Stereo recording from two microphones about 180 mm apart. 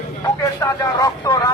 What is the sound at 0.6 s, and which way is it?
Speech, 20° left (ahead or behind).